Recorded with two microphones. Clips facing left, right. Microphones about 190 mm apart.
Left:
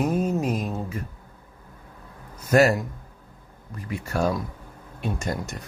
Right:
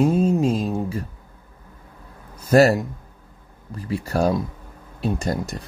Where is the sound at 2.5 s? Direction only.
35° right (ahead or behind).